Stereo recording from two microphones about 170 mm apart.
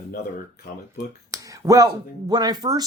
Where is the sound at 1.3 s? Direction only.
20° right (ahead or behind).